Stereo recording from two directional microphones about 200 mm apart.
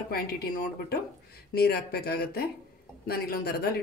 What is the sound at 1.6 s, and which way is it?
Speech, 50° left (ahead or behind).